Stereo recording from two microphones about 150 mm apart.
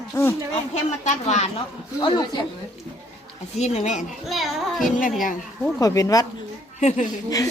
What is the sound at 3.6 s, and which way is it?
Speech, 50° left (ahead or behind).